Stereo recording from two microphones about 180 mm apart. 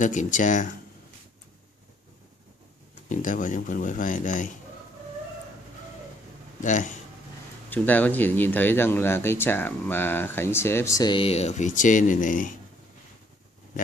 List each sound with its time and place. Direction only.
0.0 s speech: 45° left (ahead or behind)
3.1 s speech: 45° left (ahead or behind)
6.6 s speech: 45° left (ahead or behind)
7.7 s speech: 10° left (ahead or behind); by 12.4 s 45° left (ahead or behind)